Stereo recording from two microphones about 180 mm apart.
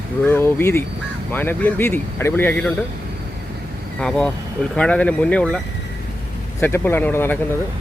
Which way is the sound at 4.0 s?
5° left (ahead or behind).